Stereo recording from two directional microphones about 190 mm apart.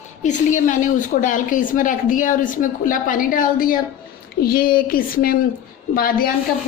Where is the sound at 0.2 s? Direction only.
40° left (ahead or behind).